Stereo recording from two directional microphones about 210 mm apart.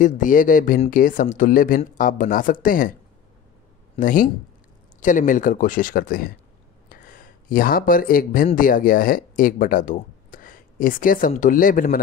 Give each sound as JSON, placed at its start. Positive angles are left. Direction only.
{"t": 0.0, "sound": "speech", "side_deg": 40}
{"t": 4.0, "sound": "speech", "side_deg": 40}